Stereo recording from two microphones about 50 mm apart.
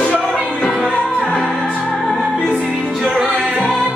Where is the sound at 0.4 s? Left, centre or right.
Centre.